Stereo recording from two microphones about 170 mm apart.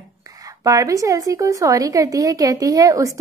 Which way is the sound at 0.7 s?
20° right (ahead or behind).